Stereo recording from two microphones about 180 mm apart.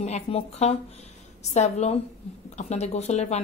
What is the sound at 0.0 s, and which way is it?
A woman's voice, 35° left (ahead or behind).